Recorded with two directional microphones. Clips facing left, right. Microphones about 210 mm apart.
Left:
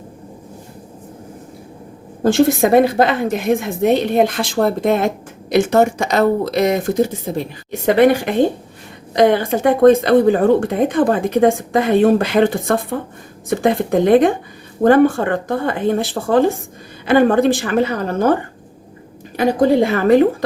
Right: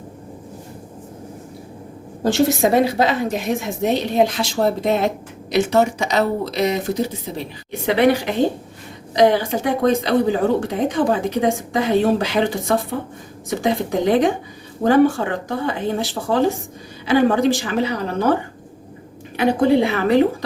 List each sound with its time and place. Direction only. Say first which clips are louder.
2.2 s a woman's voice: left 3 dB; 55° left (ahead or behind)
19.4 s a woman's voice: left 2 dB; 45° left (ahead or behind)